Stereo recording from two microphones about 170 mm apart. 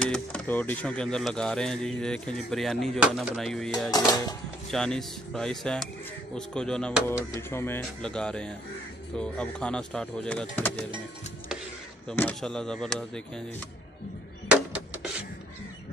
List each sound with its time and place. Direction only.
0.0 s speech: 5° left (ahead or behind)
3.9 s speech: 20° left (ahead or behind)
4.6 s speech: centre (ahead or behind)
12.1 s speech: 5° left (ahead or behind)